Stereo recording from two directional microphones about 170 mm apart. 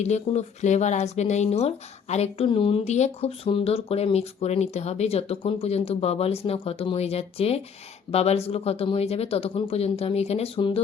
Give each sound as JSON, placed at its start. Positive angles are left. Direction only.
{"t": 0.0, "sound": "speech", "side_deg": 40}